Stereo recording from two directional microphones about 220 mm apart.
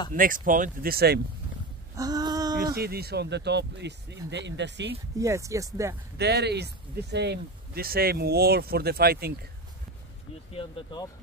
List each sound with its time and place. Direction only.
0.1 s speech: 40° right (ahead or behind)
2.0 s a sound: 15° right (ahead or behind)
2.6 s speech: 45° right (ahead or behind)
5.2 s speech: 15° right (ahead or behind)
6.1 s speech: 50° right (ahead or behind)
10.5 s speech: 25° left (ahead or behind)